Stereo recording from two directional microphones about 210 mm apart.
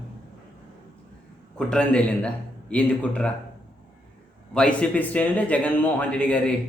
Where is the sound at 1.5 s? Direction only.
5° left (ahead or behind).